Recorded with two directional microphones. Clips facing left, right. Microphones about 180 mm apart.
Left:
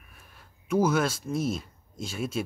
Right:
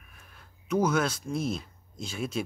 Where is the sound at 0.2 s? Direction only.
5° left (ahead or behind).